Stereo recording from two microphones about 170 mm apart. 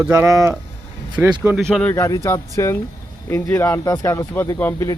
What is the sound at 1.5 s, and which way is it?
Speech, centre (ahead or behind).